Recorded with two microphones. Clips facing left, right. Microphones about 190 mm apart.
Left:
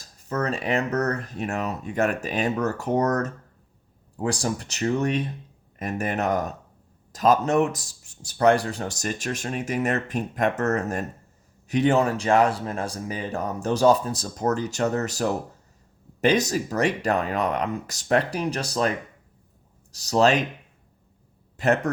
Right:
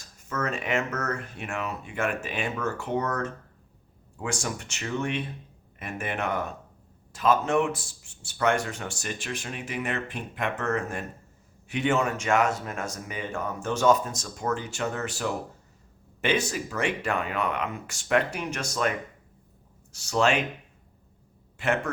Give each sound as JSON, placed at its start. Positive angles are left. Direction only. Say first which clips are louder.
{"t": 0.0, "sound": "a man's voice", "louder": "left 4 dB", "side_deg": 35}
{"t": 21.6, "sound": "a man's voice", "louder": "left 5 dB", "side_deg": 40}